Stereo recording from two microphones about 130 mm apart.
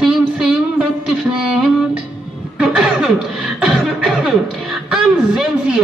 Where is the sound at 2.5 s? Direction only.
5° right (ahead or behind).